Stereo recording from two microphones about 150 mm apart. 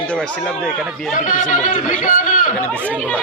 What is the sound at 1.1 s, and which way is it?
A man's voice, 60° left (ahead or behind).